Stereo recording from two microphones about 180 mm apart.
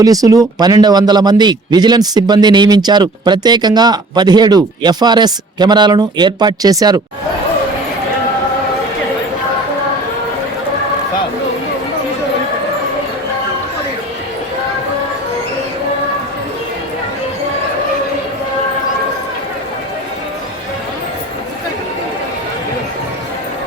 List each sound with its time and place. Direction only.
0.0 s speech: 20° right (ahead or behind)